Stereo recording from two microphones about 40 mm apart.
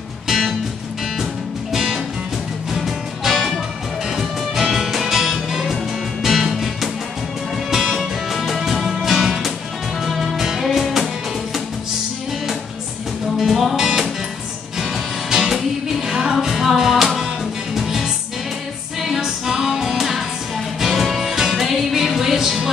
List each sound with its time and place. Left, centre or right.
1.7 s music: centre
13.4 s music: centre